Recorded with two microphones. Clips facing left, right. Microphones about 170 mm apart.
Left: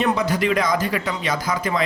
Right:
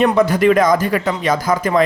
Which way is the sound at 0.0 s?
50° right (ahead or behind).